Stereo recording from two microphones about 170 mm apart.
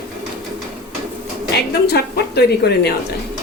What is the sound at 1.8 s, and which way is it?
Speech, 70° left (ahead or behind).